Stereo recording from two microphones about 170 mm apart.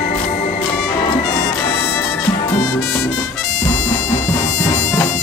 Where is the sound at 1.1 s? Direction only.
25° left (ahead or behind).